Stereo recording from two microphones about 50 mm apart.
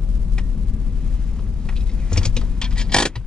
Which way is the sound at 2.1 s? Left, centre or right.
Centre.